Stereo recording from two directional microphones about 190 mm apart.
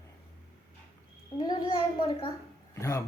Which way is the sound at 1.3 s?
20° left (ahead or behind).